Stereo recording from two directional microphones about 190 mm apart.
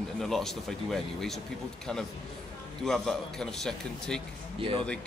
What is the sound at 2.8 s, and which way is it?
Speech, centre (ahead or behind).